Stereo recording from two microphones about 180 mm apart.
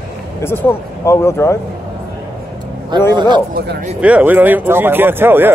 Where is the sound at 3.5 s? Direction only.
65° right (ahead or behind).